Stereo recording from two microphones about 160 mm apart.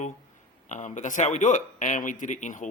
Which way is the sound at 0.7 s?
50° left (ahead or behind).